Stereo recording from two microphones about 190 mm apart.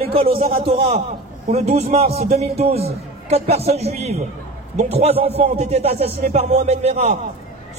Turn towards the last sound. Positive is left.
turn(degrees=-35)  # may be behind; listen again after turning